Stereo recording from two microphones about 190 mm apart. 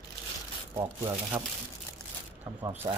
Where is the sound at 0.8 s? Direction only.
15° right (ahead or behind).